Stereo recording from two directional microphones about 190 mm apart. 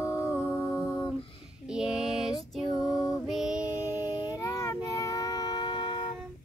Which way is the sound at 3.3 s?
5° right (ahead or behind).